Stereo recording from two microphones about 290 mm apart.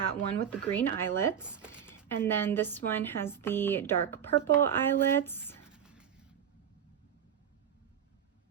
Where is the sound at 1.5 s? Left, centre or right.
Centre.